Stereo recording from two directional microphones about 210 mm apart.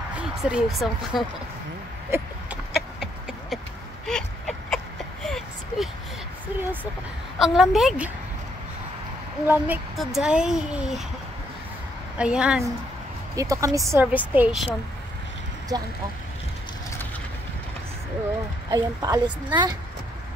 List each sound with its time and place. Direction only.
0.1 s speech: 5° right (ahead or behind)
2.0 s a sound: 10° right (ahead or behind)
7.3 s speech: centre (ahead or behind)
9.5 s speech: 5° right (ahead or behind)
12.2 s speech: 5° right (ahead or behind)
13.4 s a woman's voice: 15° right (ahead or behind)
15.7 s a woman's voice: 20° right (ahead or behind)
18.7 s a woman's voice: 15° right (ahead or behind)